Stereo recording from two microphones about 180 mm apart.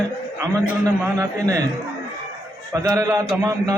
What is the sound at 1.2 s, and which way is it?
Speech, 20° right (ahead or behind).